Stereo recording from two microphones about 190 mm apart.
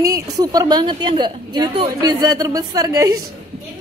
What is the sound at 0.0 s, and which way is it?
A woman's voice, 20° right (ahead or behind).